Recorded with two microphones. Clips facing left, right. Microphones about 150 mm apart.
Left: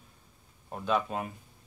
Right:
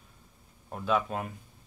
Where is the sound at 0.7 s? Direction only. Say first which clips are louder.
Right 1 dB; centre (ahead or behind).